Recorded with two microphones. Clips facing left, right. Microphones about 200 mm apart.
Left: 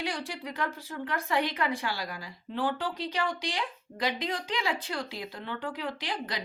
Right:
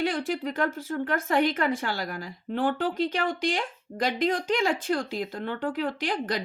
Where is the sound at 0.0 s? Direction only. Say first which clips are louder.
Right 8 dB; 50° right (ahead or behind).